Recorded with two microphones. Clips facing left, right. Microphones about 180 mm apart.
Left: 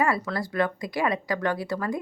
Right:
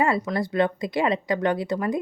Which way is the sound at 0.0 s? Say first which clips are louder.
Right 3 dB; 20° right (ahead or behind).